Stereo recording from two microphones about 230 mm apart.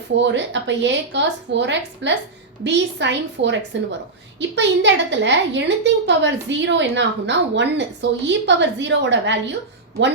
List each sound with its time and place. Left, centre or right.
0.2 s a woman's voice: right